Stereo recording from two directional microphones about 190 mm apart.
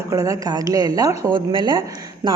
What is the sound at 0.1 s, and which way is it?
Speech, 15° right (ahead or behind).